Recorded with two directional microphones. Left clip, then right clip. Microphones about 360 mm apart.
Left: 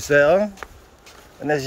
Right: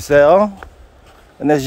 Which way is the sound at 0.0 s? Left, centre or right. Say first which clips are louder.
Right 6 dB; centre.